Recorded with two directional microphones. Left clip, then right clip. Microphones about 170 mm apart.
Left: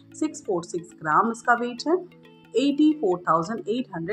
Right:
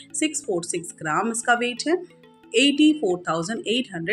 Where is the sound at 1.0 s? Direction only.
35° right (ahead or behind).